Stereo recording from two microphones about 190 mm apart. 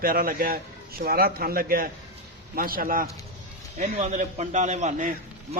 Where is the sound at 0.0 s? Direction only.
50° right (ahead or behind).